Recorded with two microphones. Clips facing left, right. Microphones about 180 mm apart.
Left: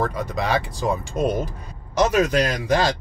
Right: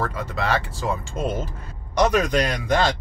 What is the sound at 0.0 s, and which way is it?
Speech, 15° left (ahead or behind).